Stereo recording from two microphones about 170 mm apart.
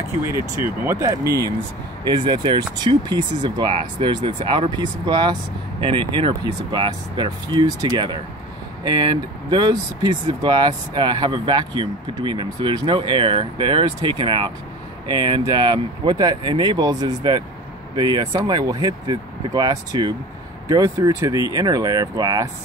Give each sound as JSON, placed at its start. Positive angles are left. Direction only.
{"t": 0.3, "sound": "speech", "side_deg": -15}